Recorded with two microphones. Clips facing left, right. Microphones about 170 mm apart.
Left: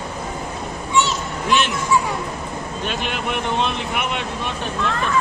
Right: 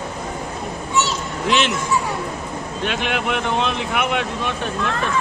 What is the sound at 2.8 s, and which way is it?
Speech, 60° right (ahead or behind).